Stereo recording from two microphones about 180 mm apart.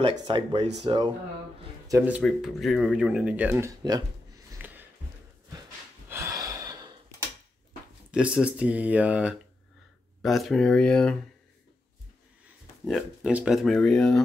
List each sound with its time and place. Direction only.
0.0 s speech: 30° right (ahead or behind)
1.9 s speech: 10° right (ahead or behind)
2.2 s speech: centre (ahead or behind); by 4.0 s 20° right (ahead or behind)
4.5 s a sound: 10° right (ahead or behind)
6.0 s gasp: 15° right (ahead or behind)
8.1 s speech: 5° right (ahead or behind)
12.8 s speech: 5° right (ahead or behind)